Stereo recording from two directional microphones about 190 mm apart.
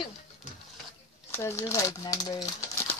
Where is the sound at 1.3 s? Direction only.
15° left (ahead or behind).